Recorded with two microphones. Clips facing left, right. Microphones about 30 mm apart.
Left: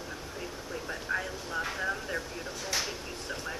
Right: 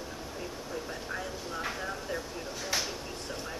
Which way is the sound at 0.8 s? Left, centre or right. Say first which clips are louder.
Left 4 dB; centre.